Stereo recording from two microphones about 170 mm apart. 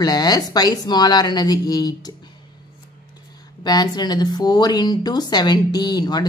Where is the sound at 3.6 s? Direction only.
25° left (ahead or behind).